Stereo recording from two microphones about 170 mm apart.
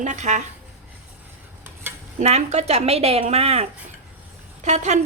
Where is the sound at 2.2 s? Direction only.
45° right (ahead or behind).